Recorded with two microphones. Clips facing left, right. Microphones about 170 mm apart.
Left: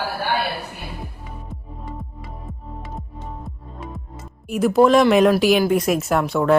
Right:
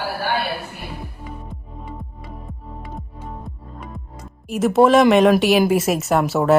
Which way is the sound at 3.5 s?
Centre (ahead or behind).